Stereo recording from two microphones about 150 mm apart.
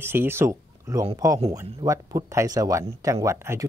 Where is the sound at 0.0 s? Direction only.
15° right (ahead or behind).